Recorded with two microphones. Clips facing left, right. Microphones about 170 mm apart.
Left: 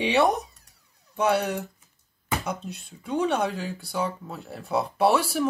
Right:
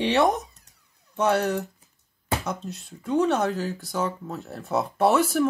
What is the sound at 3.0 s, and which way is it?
A man's voice, centre (ahead or behind).